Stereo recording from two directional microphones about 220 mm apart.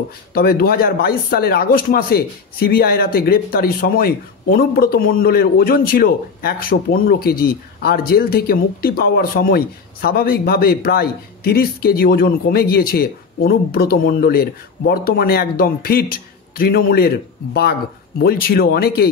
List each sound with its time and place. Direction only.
0.3 s speech: 40° left (ahead or behind)
18.2 s speech: 45° left (ahead or behind)